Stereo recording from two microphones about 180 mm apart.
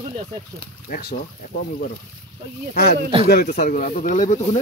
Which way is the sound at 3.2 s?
60° left (ahead or behind).